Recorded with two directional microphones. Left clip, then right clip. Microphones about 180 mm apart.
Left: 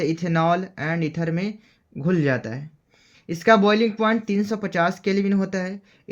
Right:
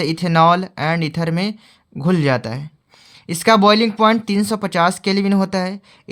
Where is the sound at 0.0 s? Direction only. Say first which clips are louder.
Right 8 dB; 40° right (ahead or behind).